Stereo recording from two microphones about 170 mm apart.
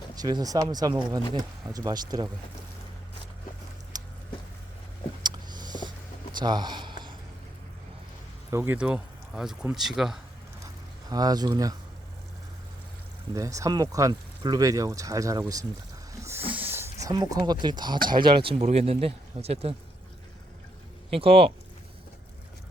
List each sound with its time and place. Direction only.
0.2 s speech: 25° right (ahead or behind)
3.9 s a sound: 20° right (ahead or behind)
5.2 s a sound: 25° right (ahead or behind)
8.4 s speech: 15° right (ahead or behind)
11.1 s speech: 25° right (ahead or behind)
13.3 s speech: 20° right (ahead or behind)
16.2 s a sound: 10° right (ahead or behind)
18.2 s speech: 30° right (ahead or behind)
21.1 s speech: 35° right (ahead or behind)